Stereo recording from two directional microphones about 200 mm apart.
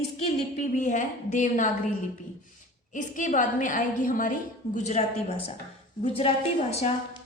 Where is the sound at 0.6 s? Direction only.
40° left (ahead or behind).